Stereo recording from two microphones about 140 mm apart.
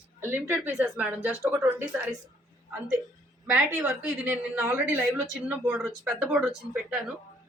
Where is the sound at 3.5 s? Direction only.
10° right (ahead or behind).